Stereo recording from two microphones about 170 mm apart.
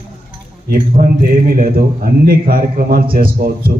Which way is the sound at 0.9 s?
55° right (ahead or behind).